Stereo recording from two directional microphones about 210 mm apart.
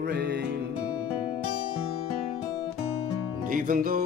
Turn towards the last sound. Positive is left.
turn(degrees=-45)  # may be behind; listen again after turning